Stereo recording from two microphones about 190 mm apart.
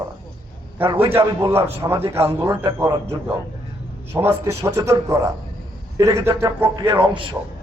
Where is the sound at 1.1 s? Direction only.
10° right (ahead or behind).